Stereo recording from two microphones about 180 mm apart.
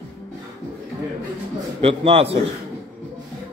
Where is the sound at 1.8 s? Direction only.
30° right (ahead or behind).